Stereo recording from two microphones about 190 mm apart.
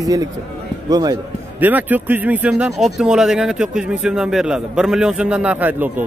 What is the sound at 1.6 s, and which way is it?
A man's voice, 10° right (ahead or behind).